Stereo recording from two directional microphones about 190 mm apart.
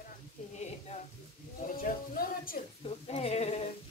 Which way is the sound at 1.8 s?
50° left (ahead or behind).